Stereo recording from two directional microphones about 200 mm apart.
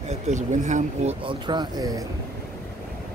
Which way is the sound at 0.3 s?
35° right (ahead or behind).